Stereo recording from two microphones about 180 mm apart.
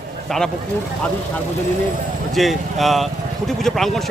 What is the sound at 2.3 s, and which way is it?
A man's voice, centre (ahead or behind).